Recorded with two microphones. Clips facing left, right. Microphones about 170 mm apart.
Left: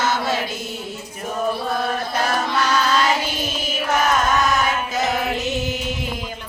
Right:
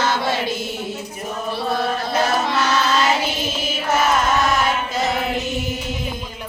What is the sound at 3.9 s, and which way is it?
Chant, 5° right (ahead or behind).